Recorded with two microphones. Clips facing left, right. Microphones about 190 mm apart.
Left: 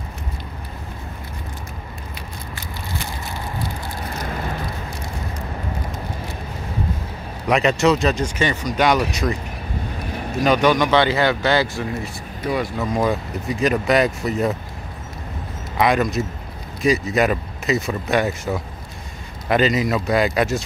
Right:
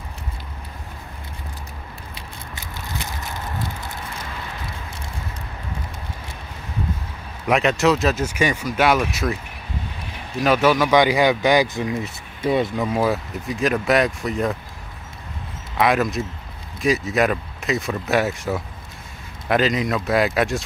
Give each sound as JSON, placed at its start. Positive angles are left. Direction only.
{"t": 4.2, "sound": "vehicle", "side_deg": 45}
{"t": 7.4, "sound": "speech", "side_deg": 0}
{"t": 10.4, "sound": "speech", "side_deg": -5}
{"t": 12.8, "sound": "speech", "side_deg": -5}
{"t": 15.8, "sound": "speech", "side_deg": 0}